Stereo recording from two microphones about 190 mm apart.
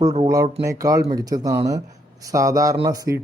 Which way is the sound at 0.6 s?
15° right (ahead or behind).